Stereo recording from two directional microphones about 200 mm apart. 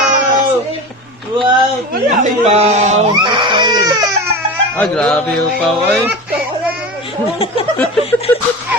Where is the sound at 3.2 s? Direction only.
25° right (ahead or behind).